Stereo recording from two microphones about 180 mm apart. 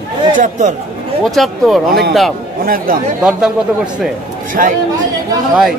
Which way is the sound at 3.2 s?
5° right (ahead or behind).